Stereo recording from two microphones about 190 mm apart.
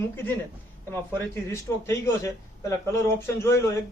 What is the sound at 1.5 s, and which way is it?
Speech, 15° left (ahead or behind).